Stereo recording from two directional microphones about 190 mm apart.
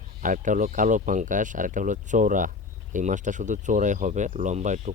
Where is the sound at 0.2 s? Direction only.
45° right (ahead or behind).